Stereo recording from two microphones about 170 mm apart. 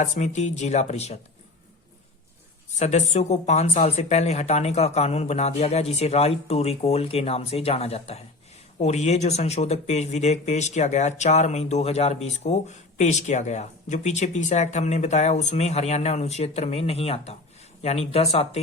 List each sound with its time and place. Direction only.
0.0 s speech: 45° left (ahead or behind)
2.7 s speech: 40° left (ahead or behind)